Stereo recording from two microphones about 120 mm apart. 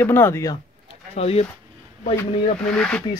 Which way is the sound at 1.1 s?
60° left (ahead or behind).